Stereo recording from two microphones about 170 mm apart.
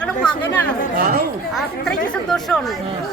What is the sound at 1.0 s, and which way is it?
Speech, 60° right (ahead or behind).